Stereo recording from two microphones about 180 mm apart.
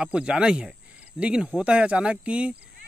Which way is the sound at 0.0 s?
5° right (ahead or behind).